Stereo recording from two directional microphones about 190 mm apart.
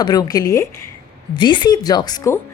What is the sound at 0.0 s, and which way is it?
A woman's voice, 20° left (ahead or behind).